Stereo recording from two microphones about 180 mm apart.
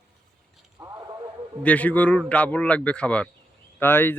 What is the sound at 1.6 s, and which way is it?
A man's voice, 10° left (ahead or behind).